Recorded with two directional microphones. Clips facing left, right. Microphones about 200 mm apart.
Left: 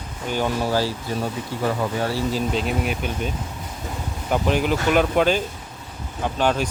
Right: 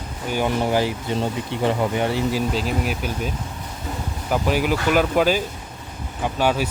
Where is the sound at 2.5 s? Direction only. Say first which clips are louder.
Even; centre (ahead or behind).